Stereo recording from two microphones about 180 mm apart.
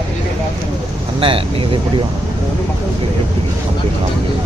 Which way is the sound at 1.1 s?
30° right (ahead or behind).